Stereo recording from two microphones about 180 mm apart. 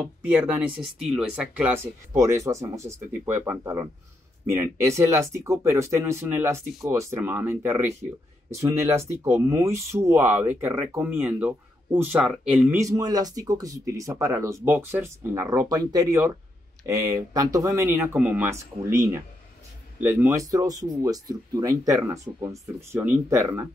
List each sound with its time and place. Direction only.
0.0 s speech: 10° right (ahead or behind)
12.9 s speech: 20° right (ahead or behind)